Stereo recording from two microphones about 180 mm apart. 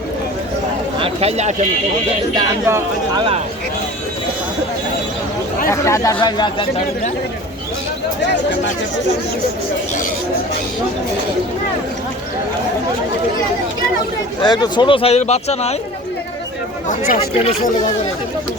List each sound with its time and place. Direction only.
0.9 s speech: 35° right (ahead or behind)
2.3 s speech: 15° right (ahead or behind)
5.6 s speech: 15° left (ahead or behind)
14.4 s speech: 25° left (ahead or behind)
17.2 s speech: 35° left (ahead or behind)